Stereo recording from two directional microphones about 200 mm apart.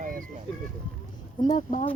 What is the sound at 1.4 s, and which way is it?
Speech, 25° left (ahead or behind).